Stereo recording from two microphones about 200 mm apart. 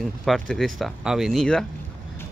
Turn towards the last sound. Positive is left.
turn(degrees=0)  # may be behind; listen again after turning